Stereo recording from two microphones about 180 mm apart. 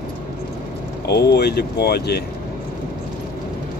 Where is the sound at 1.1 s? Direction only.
65° left (ahead or behind).